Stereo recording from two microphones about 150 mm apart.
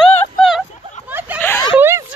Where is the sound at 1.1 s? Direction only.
15° right (ahead or behind).